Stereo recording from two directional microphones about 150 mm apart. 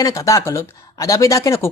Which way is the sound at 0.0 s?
20° left (ahead or behind).